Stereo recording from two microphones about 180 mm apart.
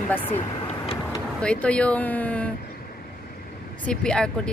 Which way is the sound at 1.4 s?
5° left (ahead or behind).